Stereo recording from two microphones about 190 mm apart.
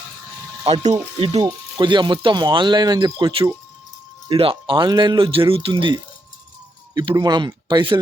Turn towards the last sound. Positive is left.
turn(degrees=-25)  # may be behind; listen again after turning